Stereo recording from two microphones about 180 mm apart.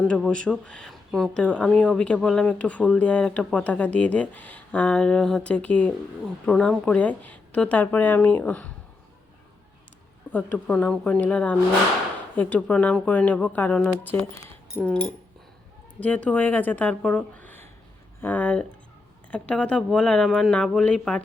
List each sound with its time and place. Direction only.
0.1 s speech: 5° left (ahead or behind)
10.3 s speech: 10° left (ahead or behind)
14.8 s speech: 5° right (ahead or behind)
16.0 s speech: 10° left (ahead or behind)